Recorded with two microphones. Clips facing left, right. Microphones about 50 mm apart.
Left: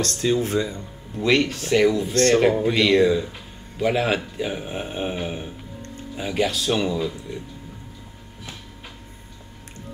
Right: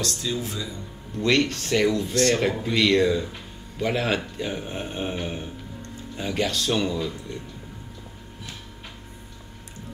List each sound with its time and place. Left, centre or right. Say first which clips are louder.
0.0 s speech: left 7 dB; left
1.1 s speech: left 2 dB; centre